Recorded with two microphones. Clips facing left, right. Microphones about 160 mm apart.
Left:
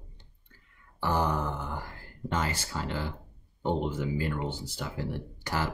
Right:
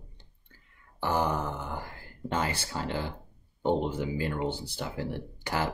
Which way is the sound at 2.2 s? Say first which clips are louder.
Right 1 dB; 30° right (ahead or behind).